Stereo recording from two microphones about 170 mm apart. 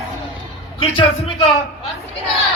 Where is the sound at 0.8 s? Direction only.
30° left (ahead or behind).